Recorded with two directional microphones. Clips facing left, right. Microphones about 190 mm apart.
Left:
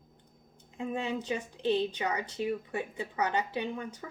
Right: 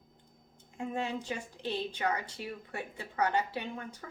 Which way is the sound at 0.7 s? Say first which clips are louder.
Left 2 dB; 15° left (ahead or behind).